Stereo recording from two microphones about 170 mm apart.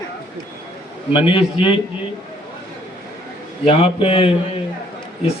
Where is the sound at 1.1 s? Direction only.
30° left (ahead or behind).